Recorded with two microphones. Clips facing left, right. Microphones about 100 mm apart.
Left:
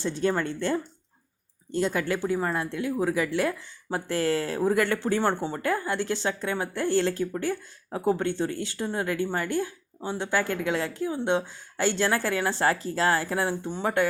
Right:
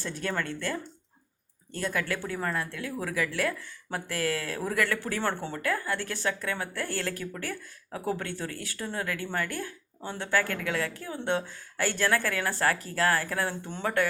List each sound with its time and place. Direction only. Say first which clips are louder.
0.0 s speech: left 6 dB; 25° left (ahead or behind)